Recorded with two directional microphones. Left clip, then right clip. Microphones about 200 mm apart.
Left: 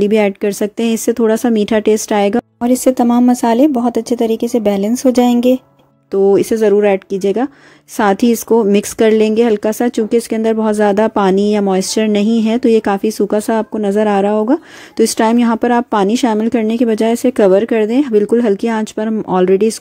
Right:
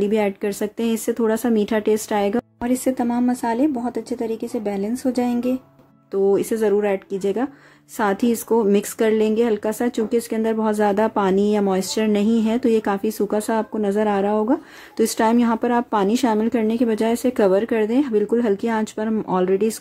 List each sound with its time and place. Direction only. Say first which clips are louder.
0.0 s speech: left 8 dB; 30° left (ahead or behind)